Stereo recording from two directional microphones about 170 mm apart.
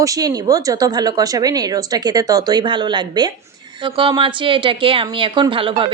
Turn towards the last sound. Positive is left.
turn(degrees=-30)  # may be behind; listen again after turning